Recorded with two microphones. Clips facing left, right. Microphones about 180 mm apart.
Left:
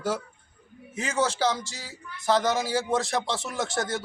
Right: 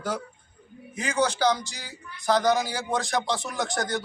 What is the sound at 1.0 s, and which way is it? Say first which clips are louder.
Speech: right 1 dB; 25° left (ahead or behind).